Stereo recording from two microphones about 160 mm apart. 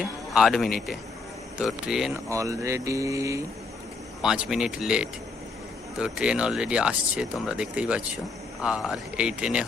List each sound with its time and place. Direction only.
0.0 s speech: centre (ahead or behind)
2.1 s speech: 20° right (ahead or behind)
4.2 s speech: 5° right (ahead or behind)